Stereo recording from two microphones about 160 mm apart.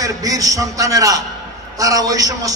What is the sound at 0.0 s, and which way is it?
A man's voice, 20° right (ahead or behind).